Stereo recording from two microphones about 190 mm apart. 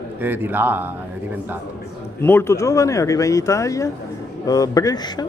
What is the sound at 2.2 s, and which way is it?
A man's voice, 15° left (ahead or behind).